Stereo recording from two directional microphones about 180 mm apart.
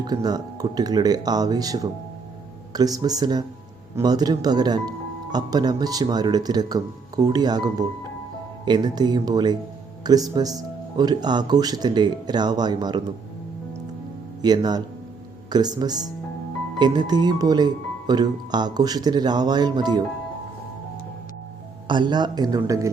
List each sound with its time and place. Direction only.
0.0 s speech: 20° right (ahead or behind)
14.4 s speech: 20° right (ahead or behind)
21.8 s speech: 25° right (ahead or behind)